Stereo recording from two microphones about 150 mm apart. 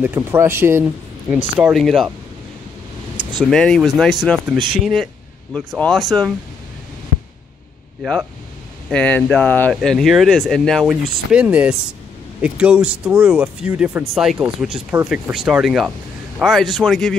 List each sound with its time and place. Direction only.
0.0 s speech: 15° right (ahead or behind)
1.7 s speech: centre (ahead or behind)
3.2 s a sound: 30° right (ahead or behind)
3.4 s speech: 5° left (ahead or behind)
8.0 s speech: centre (ahead or behind)